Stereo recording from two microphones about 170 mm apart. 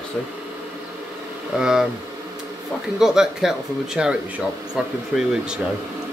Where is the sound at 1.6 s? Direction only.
5° right (ahead or behind).